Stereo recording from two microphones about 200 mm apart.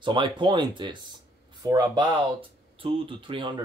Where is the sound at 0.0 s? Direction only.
25° right (ahead or behind).